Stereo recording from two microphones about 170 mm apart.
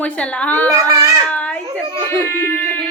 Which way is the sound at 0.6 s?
20° right (ahead or behind).